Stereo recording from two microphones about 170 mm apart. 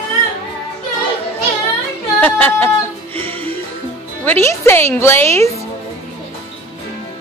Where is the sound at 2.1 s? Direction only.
10° left (ahead or behind).